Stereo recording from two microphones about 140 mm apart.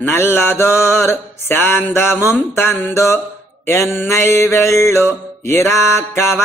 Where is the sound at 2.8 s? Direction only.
20° left (ahead or behind).